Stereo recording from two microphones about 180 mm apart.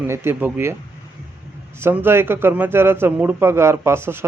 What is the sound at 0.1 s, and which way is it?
Speech, 15° right (ahead or behind).